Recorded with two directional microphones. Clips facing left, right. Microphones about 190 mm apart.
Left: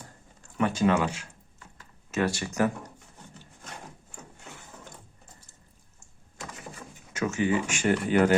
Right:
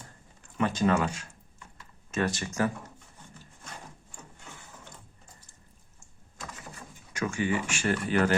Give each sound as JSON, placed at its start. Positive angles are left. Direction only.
{"t": 0.5, "sound": "speech", "side_deg": 10}
{"t": 7.2, "sound": "speech", "side_deg": 20}